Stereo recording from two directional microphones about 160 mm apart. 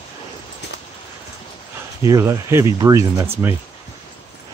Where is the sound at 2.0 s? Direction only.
20° right (ahead or behind).